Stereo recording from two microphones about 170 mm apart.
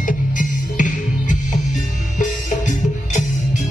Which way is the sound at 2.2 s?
45° left (ahead or behind).